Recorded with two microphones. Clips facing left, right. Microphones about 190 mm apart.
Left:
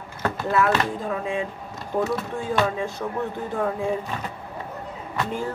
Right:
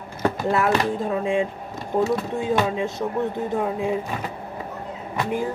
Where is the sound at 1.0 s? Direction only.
30° right (ahead or behind).